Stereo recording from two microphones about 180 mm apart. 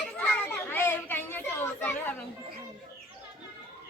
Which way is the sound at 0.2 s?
10° left (ahead or behind).